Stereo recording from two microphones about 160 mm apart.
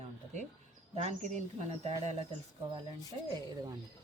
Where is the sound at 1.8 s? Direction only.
40° right (ahead or behind).